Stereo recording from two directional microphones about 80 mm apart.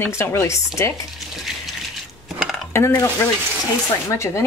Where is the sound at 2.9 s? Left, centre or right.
Left.